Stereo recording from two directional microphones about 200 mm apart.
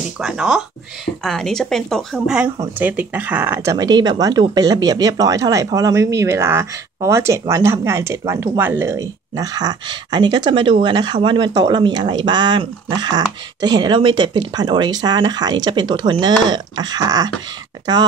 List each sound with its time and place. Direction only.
0.2 s speech: 5° right (ahead or behind); by 17.3 s 20° right (ahead or behind)